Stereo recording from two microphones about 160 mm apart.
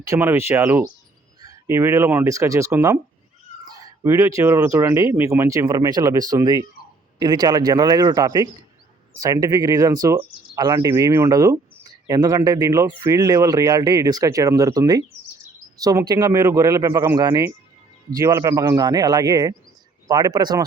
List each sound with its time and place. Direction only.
0.2 s speech: 15° right (ahead or behind)